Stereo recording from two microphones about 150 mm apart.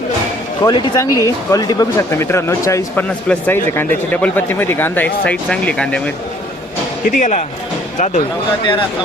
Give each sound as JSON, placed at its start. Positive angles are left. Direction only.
{"t": 0.6, "sound": "speech", "side_deg": 25}
{"t": 7.0, "sound": "speech", "side_deg": 60}